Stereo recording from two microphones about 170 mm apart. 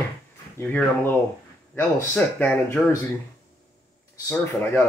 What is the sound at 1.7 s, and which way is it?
A man's voice, 10° left (ahead or behind).